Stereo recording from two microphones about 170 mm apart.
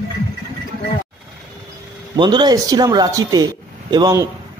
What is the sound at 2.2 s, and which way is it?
Speech, 25° right (ahead or behind).